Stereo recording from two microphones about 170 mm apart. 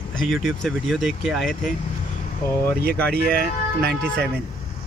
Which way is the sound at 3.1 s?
70° right (ahead or behind).